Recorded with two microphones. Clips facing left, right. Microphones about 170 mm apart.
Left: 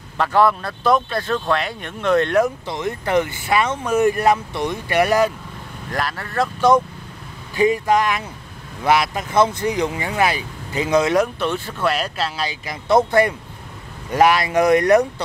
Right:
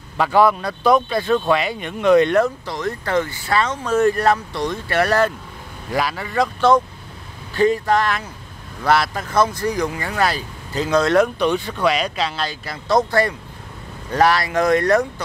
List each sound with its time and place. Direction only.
0.2 s speech: centre (ahead or behind)
2.4 s speech: 20° left (ahead or behind)
5.9 s speech: centre (ahead or behind)
7.5 s speech: 15° left (ahead or behind)